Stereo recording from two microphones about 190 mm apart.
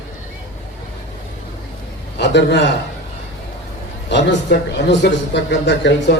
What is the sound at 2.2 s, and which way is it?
Speech, 65° left (ahead or behind).